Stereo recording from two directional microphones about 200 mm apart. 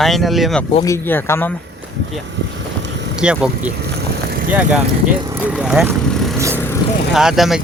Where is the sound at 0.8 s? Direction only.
10° left (ahead or behind).